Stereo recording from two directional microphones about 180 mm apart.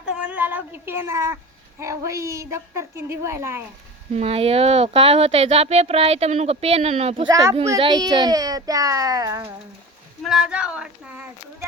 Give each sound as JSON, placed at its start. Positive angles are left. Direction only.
{"t": 0.0, "sound": "a sound", "side_deg": -5}
{"t": 1.8, "sound": "a woman's voice", "side_deg": -15}
{"t": 4.1, "sound": "speech", "side_deg": -35}
{"t": 10.2, "sound": "speech", "side_deg": -5}